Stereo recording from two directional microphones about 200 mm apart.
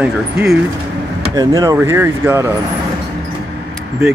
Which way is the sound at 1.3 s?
20° right (ahead or behind).